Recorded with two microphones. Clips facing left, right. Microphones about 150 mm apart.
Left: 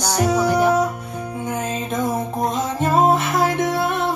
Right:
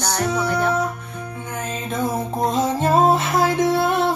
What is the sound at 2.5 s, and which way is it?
Music, 35° right (ahead or behind).